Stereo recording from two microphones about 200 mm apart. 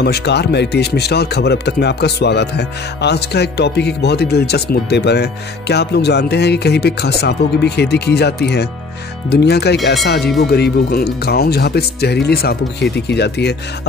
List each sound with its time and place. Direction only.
0.0 s speech: 55° left (ahead or behind)